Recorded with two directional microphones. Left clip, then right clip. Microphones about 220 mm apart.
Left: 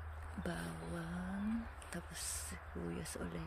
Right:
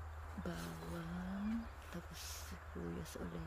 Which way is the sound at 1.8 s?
Centre (ahead or behind).